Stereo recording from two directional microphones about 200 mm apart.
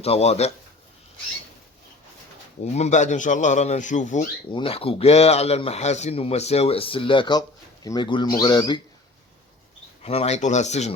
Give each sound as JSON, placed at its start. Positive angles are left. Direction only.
{"t": 0.0, "sound": "a man's voice", "side_deg": 30}
{"t": 2.7, "sound": "a man's voice", "side_deg": 35}
{"t": 4.5, "sound": "speech", "side_deg": 30}
{"t": 10.0, "sound": "a man's voice", "side_deg": 30}